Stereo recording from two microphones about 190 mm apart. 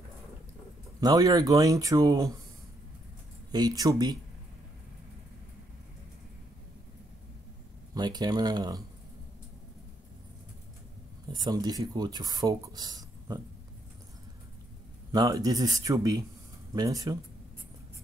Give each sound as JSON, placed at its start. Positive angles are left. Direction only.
{"t": 1.0, "sound": "speech", "side_deg": -20}
{"t": 3.5, "sound": "speech", "side_deg": -20}
{"t": 7.9, "sound": "speech", "side_deg": -20}
{"t": 11.3, "sound": "speech", "side_deg": -20}
{"t": 15.0, "sound": "speech", "side_deg": -20}